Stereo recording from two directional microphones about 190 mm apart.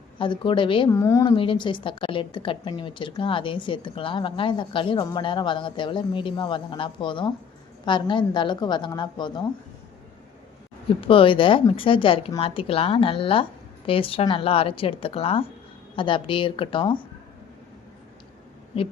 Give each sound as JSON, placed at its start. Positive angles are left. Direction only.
{"t": 0.2, "sound": "a woman's voice", "side_deg": 25}
{"t": 0.9, "sound": "a woman's voice", "side_deg": 15}
{"t": 10.8, "sound": "a woman's voice", "side_deg": 30}